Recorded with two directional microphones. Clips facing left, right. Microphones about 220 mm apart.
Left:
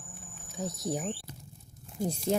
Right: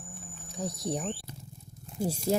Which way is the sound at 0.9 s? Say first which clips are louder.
Even; 5° left (ahead or behind).